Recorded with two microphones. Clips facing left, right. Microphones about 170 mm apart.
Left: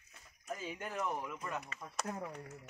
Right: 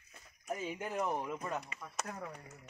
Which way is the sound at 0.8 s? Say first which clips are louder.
Right 3 dB; 20° right (ahead or behind).